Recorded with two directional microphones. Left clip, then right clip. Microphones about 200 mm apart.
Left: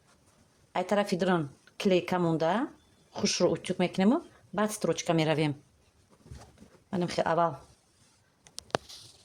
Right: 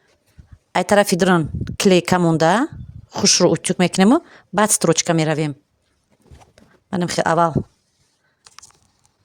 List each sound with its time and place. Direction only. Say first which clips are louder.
0.7 s speech: right 13 dB; 50° right (ahead or behind); by 5.5 s 35° right (ahead or behind)
6.6 s a sound: right 7 dB; 40° right (ahead or behind)
6.9 s speech: right 10 dB; 40° right (ahead or behind)